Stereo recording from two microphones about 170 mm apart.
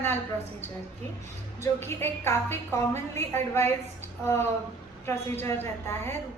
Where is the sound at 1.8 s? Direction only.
15° left (ahead or behind).